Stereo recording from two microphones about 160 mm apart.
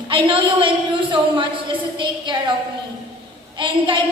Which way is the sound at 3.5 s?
30° right (ahead or behind).